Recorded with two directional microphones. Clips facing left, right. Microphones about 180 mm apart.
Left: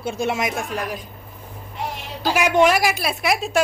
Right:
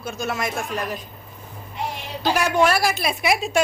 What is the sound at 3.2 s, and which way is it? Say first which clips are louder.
Speech: even; centre (ahead or behind).